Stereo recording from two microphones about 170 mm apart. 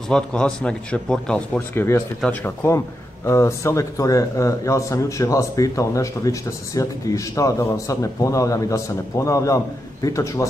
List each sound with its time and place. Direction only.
0.1 s speech: 5° left (ahead or behind)